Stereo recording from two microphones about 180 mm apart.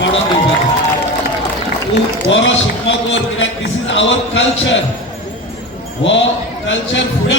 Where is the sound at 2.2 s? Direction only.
90° left.